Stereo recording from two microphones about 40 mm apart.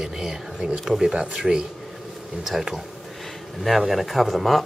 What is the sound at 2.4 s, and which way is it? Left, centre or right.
Speech, centre.